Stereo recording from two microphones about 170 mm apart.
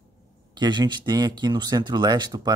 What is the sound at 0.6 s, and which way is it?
Speech, 25° right (ahead or behind).